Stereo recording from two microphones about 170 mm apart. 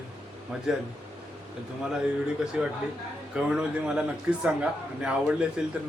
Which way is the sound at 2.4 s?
5° right (ahead or behind).